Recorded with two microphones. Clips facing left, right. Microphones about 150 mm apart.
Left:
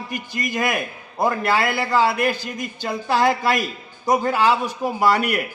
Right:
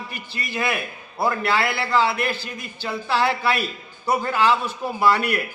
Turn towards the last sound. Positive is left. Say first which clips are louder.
# left 1 dB
turn(degrees=10)  # may be behind; listen again after turning